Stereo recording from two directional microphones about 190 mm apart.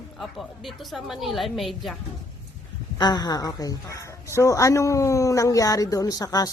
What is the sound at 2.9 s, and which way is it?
A woman's voice, 20° left (ahead or behind).